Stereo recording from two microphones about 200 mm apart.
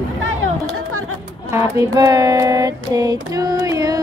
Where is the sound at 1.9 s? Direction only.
15° right (ahead or behind).